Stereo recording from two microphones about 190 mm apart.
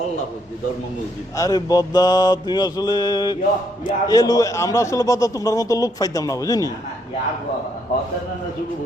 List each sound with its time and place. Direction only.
1.4 s mantra: 20° left (ahead or behind)
3.8 s a man's voice: 20° left (ahead or behind)